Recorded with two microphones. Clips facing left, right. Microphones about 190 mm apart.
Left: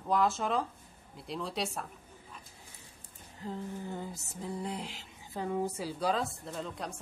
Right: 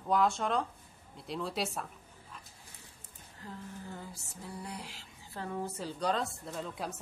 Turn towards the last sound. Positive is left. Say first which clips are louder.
# even
turn(degrees=-5)  # may be behind; listen again after turning